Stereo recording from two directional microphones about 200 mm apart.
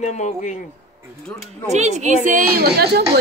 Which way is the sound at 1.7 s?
35° right (ahead or behind).